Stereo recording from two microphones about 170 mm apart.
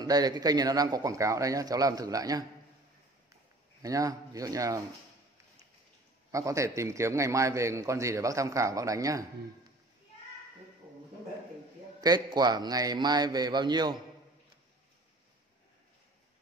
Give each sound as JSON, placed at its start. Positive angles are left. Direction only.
{"t": 0.0, "sound": "a man's voice", "side_deg": -20}
{"t": 3.8, "sound": "a man's voice", "side_deg": -20}
{"t": 6.3, "sound": "a man's voice", "side_deg": -20}
{"t": 12.0, "sound": "a man's voice", "side_deg": -25}